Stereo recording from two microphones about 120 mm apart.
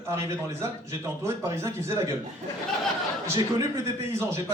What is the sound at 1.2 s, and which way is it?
Speech, 25° right (ahead or behind).